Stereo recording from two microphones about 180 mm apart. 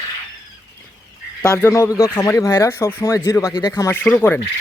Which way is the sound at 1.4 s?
15° left (ahead or behind).